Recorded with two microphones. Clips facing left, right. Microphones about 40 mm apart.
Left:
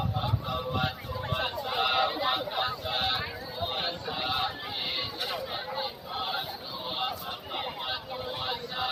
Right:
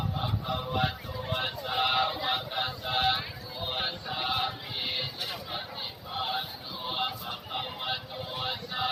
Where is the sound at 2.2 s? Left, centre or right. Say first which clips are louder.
Left 2 dB; centre.